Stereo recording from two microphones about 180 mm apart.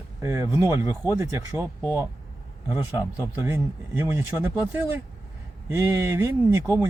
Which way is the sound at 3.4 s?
10° right (ahead or behind).